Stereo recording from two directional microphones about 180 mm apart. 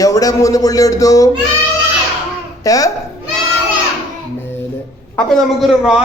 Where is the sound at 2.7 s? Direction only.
20° left (ahead or behind).